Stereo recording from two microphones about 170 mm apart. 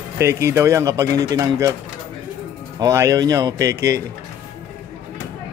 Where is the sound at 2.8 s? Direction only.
20° right (ahead or behind).